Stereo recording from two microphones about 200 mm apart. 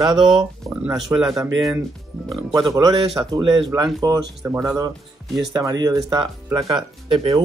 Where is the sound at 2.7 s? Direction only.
20° right (ahead or behind).